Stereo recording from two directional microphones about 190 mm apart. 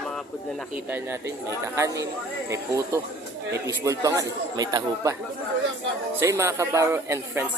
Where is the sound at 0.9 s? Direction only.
15° right (ahead or behind).